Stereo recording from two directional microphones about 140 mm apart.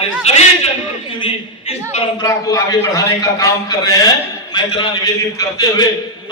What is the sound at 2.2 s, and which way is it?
A man's voice, 25° left (ahead or behind).